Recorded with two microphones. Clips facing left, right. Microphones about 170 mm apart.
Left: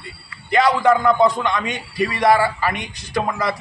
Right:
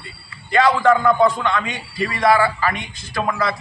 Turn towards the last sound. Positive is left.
turn(degrees=15)  # may be behind; listen again after turning